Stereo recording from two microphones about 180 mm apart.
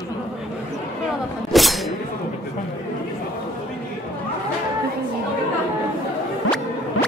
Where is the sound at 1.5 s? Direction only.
Centre (ahead or behind).